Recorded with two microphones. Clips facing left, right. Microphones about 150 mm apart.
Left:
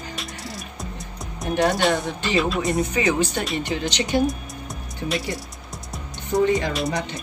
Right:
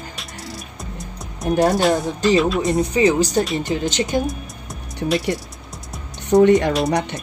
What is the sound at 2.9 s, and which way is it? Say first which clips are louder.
Speech: right 6 dB; 35° right (ahead or behind).